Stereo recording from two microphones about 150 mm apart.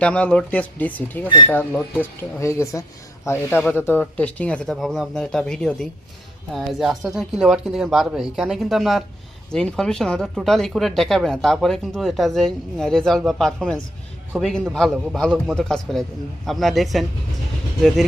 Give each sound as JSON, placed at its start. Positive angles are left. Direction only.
{"t": 0.0, "sound": "speech", "side_deg": 10}